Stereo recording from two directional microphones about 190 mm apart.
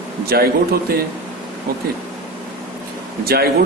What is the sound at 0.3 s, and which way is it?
Speech, 55° right (ahead or behind).